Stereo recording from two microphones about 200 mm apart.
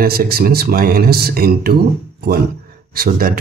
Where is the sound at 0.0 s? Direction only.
50° right (ahead or behind).